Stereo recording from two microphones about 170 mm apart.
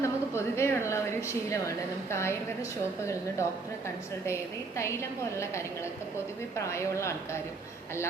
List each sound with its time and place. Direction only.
0.0 s a woman's voice: 15° left (ahead or behind)
4.8 s a woman's voice: 15° left (ahead or behind)